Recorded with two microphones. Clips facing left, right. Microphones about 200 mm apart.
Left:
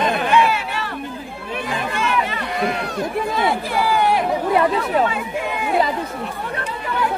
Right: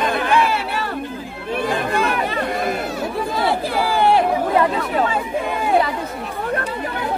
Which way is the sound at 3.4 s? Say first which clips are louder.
Right 2 dB; 30° right (ahead or behind).